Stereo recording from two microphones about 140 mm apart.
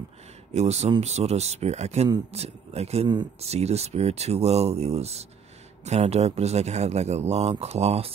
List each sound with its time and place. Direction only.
0.5 s speech: 50° right (ahead or behind)